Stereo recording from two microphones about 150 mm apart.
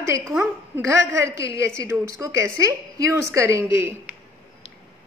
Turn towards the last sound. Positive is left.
turn(degrees=-15)  # may be behind; listen again after turning